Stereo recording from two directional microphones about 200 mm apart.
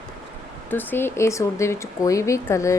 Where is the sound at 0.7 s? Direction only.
10° left (ahead or behind).